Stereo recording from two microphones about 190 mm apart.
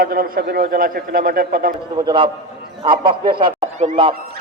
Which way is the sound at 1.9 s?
25° right (ahead or behind).